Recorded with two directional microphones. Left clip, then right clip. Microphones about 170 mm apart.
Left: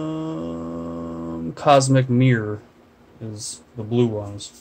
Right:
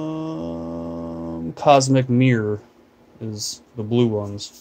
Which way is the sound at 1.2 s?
15° right (ahead or behind).